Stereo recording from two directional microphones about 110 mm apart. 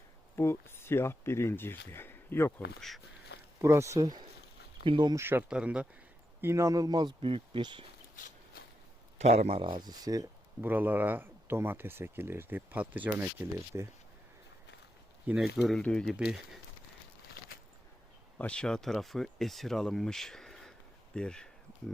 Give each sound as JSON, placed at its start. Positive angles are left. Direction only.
{"t": 0.3, "sound": "speech", "side_deg": 20}
{"t": 3.6, "sound": "speech", "side_deg": -25}
{"t": 4.8, "sound": "speech", "side_deg": -50}
{"t": 5.1, "sound": "speech", "side_deg": -20}
{"t": 5.5, "sound": "speech", "side_deg": -10}
{"t": 6.4, "sound": "speech", "side_deg": -25}
{"t": 9.1, "sound": "speech", "side_deg": -85}
{"t": 10.6, "sound": "speech", "side_deg": -15}
{"t": 15.4, "sound": "speech", "side_deg": 0}
{"t": 18.3, "sound": "speech", "side_deg": 10}